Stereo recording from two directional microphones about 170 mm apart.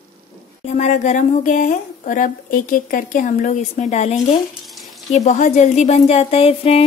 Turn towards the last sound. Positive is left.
turn(degrees=35)  # may be behind; listen again after turning